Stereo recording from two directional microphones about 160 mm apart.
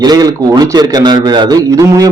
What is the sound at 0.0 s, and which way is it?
A man's voice, 25° right (ahead or behind).